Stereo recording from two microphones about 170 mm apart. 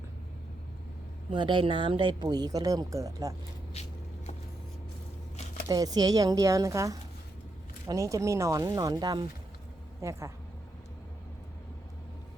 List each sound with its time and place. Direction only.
1.3 s speech: 30° right (ahead or behind)
3.8 s vehicle: 40° left (ahead or behind)
5.6 s speech: 25° right (ahead or behind)